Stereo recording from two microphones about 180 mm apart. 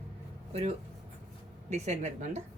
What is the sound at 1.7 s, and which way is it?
Speech, 40° right (ahead or behind).